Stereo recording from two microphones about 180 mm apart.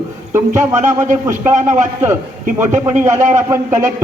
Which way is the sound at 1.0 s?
45° right (ahead or behind).